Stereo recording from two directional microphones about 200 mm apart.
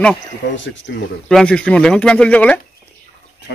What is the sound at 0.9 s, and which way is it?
Speech, 60° left (ahead or behind).